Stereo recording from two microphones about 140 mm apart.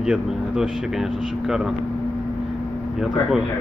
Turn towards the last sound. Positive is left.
turn(degrees=-5)  # may be behind; listen again after turning